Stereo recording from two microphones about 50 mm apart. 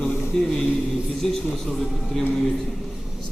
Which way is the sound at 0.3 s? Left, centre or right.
Centre.